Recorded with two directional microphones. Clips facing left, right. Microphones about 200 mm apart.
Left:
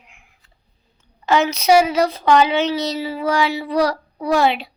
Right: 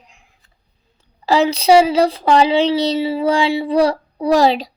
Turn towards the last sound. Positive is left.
turn(degrees=-35)  # may be behind; listen again after turning